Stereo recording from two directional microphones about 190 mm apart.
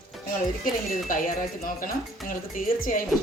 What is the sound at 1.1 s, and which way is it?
Speech, 45° left (ahead or behind).